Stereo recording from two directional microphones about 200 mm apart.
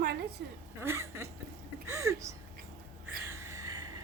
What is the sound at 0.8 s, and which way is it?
A woman's voice, 15° right (ahead or behind).